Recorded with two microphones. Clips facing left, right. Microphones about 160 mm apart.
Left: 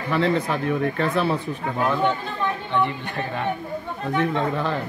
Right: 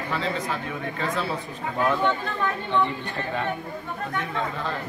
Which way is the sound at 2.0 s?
20° left (ahead or behind).